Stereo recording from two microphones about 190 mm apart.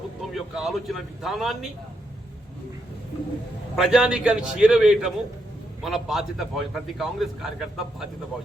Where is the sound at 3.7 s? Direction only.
Centre (ahead or behind).